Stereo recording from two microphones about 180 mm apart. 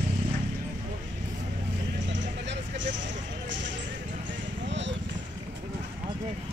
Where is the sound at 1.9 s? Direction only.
85° right.